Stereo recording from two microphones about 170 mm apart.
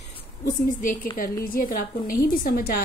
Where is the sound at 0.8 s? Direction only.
55° left (ahead or behind).